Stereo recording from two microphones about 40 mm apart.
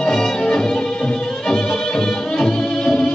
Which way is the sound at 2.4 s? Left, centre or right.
Centre.